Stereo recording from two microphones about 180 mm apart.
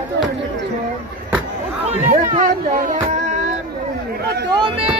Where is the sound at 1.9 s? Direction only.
45° right (ahead or behind).